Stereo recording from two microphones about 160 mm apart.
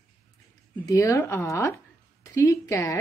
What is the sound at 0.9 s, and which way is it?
A woman's voice, 20° left (ahead or behind).